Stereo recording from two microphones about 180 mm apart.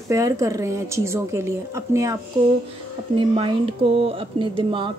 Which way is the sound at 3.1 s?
30° right (ahead or behind).